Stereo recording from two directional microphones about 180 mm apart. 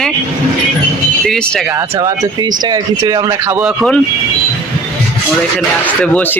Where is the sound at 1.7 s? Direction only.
20° right (ahead or behind).